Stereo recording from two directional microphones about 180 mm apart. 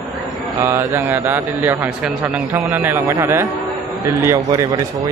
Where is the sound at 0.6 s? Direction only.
15° right (ahead or behind).